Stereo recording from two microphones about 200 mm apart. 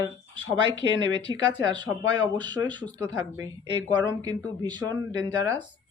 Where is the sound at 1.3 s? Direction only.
20° right (ahead or behind).